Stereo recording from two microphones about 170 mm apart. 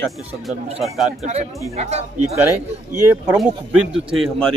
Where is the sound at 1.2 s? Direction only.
40° right (ahead or behind).